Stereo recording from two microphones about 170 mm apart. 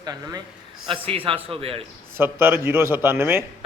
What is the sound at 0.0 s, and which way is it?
A man's voice, 25° right (ahead or behind).